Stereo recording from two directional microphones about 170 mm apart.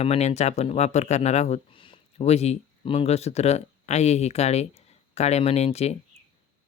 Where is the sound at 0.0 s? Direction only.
40° left (ahead or behind).